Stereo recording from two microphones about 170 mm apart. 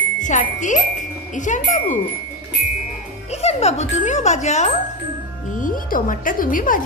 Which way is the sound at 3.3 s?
40° left (ahead or behind).